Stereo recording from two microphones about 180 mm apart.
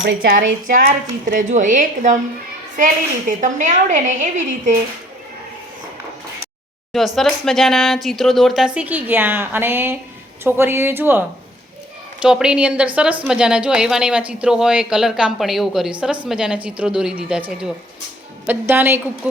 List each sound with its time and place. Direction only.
0.2 s a woman's voice: 50° right (ahead or behind)
7.2 s a woman's voice: centre (ahead or behind)